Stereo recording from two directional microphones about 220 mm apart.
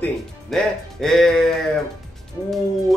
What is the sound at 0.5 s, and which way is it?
Speech, centre (ahead or behind).